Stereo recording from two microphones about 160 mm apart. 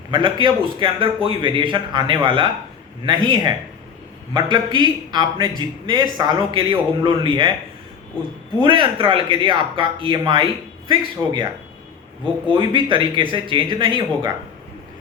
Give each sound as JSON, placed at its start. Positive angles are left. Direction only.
{"t": 0.1, "sound": "a man's voice", "side_deg": -30}
{"t": 8.5, "sound": "a man's voice", "side_deg": -30}
{"t": 12.5, "sound": "a man's voice", "side_deg": -30}